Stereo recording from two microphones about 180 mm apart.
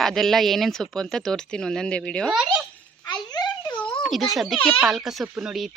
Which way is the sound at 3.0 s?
20° left (ahead or behind).